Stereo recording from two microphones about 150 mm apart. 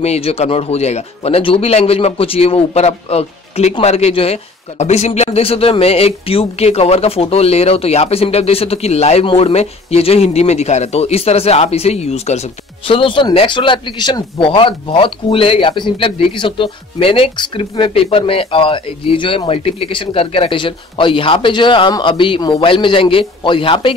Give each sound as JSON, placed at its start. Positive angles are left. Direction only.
{"t": 0.0, "sound": "speech", "side_deg": 45}